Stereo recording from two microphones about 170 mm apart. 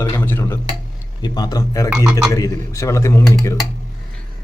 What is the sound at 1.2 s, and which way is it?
A man's voice, 25° left (ahead or behind).